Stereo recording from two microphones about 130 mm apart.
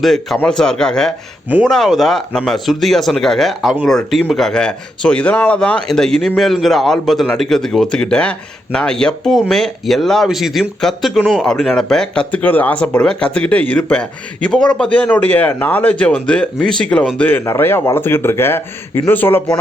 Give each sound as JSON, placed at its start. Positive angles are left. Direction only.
{"t": 0.0, "sound": "speech", "side_deg": 0}